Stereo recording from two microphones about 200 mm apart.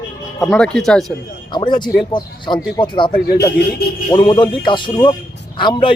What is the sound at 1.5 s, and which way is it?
Speech, 25° left (ahead or behind).